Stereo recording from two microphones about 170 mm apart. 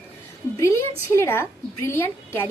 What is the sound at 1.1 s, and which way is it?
A woman's voice, 15° left (ahead or behind).